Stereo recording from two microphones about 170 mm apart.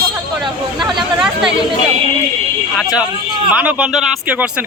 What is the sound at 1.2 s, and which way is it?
Chatter, 5° right (ahead or behind).